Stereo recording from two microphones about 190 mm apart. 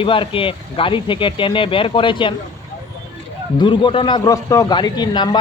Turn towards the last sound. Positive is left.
turn(degrees=25)  # may be behind; listen again after turning